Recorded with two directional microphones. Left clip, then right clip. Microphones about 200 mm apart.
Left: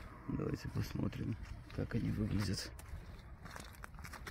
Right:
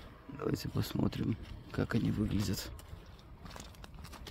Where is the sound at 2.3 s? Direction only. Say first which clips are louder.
Right 3 dB; 15° right (ahead or behind).